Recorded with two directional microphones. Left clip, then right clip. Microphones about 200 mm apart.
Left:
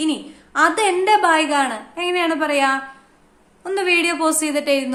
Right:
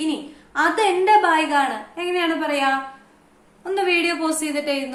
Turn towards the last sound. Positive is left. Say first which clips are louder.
# left 4 dB
turn(degrees=40)  # may be behind; listen again after turning